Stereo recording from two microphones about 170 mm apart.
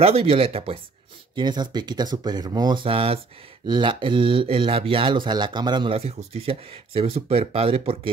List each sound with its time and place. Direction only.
0.0 s speech: 35° right (ahead or behind)